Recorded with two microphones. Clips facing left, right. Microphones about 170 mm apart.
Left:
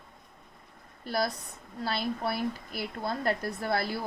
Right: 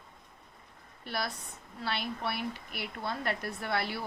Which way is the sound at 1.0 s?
40° left (ahead or behind).